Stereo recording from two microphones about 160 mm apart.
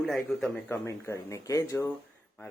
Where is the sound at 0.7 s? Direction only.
15° left (ahead or behind).